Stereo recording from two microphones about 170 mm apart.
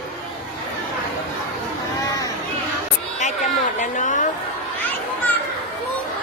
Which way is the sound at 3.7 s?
45° left (ahead or behind).